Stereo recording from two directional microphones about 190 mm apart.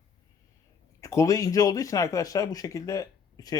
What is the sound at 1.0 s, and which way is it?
Speech, 15° left (ahead or behind).